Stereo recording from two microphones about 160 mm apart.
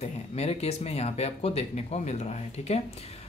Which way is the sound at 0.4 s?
40° left (ahead or behind).